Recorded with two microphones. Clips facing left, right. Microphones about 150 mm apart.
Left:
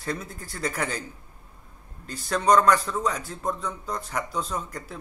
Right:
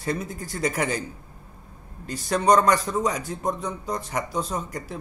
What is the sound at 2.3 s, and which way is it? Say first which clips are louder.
Speech: right 1 dB; 5° right (ahead or behind).